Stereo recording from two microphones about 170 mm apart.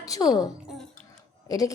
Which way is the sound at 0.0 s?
20° left (ahead or behind).